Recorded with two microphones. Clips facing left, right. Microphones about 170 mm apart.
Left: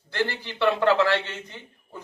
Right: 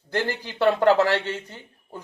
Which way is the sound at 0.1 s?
45° right (ahead or behind).